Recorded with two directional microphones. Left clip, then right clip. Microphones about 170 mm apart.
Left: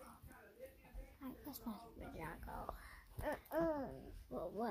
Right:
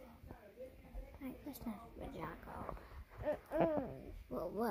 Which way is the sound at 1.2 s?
20° right (ahead or behind).